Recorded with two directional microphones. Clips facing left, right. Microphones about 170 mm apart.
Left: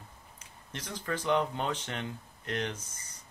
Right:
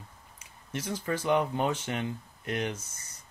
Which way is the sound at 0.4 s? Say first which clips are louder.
Right 7 dB; 10° right (ahead or behind).